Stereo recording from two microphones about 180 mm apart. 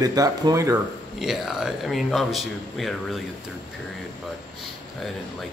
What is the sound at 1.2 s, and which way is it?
Speech, centre (ahead or behind).